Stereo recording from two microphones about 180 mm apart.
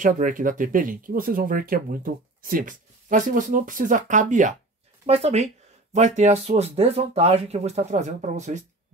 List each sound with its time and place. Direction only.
0.0 s speech: 45° right (ahead or behind)